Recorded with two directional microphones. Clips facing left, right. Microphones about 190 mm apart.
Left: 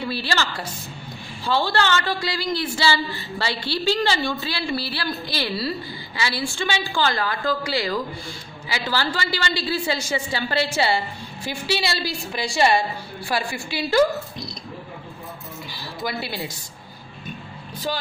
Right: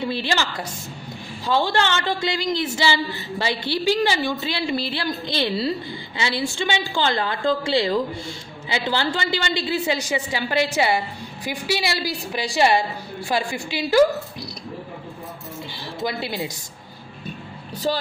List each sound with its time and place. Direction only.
0.0 s a man's voice: 20° right (ahead or behind)
15.7 s a man's voice: 25° right (ahead or behind)
17.9 s speech: 35° right (ahead or behind)